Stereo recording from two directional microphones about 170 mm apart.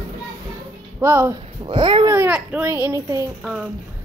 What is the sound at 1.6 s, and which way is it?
Speech, 30° right (ahead or behind).